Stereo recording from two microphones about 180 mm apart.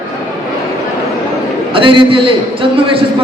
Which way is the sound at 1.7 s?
30° right (ahead or behind).